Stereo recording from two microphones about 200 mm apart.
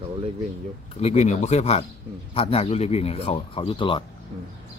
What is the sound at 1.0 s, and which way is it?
Speech, 35° left (ahead or behind).